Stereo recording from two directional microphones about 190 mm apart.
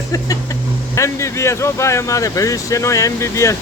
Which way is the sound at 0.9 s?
15° left (ahead or behind).